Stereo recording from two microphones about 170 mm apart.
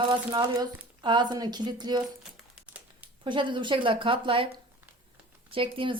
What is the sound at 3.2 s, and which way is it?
A woman's voice, 30° right (ahead or behind).